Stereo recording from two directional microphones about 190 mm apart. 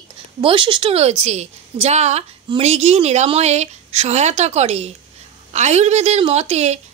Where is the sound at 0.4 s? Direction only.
25° right (ahead or behind).